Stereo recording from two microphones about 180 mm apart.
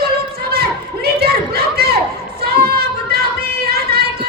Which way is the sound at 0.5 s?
60° right (ahead or behind).